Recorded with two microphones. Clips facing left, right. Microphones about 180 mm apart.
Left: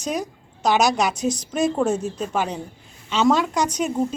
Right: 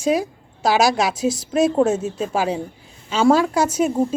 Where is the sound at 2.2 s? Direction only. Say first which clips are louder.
Right 3 dB; 5° right (ahead or behind).